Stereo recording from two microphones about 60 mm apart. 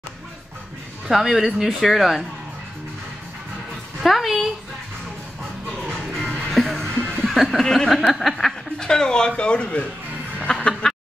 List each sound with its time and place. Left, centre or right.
1.0 s speech: centre
4.0 s a woman's voice: centre
6.3 s music: centre
7.6 s speech: centre
10.4 s a sound: centre